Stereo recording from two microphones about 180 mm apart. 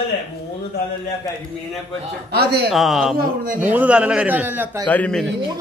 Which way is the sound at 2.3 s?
60° right (ahead or behind).